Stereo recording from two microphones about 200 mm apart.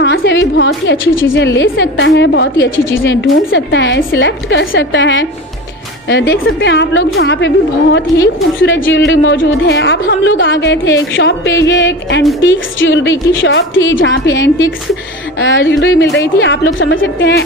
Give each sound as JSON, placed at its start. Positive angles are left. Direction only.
{"t": 0.0, "sound": "a woman's voice", "side_deg": 55}